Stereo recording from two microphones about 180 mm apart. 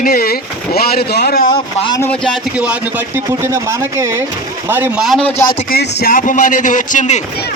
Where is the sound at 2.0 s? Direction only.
5° left (ahead or behind).